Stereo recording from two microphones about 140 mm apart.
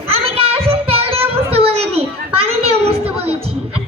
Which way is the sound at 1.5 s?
45° right (ahead or behind).